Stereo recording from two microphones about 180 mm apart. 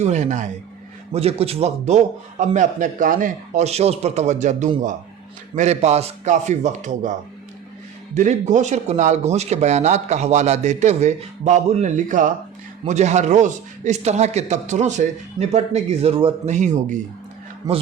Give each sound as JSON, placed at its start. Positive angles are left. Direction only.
{"t": 0.0, "sound": "speech", "side_deg": -40}
{"t": 8.1, "sound": "speech", "side_deg": -40}
{"t": 17.6, "sound": "speech", "side_deg": -20}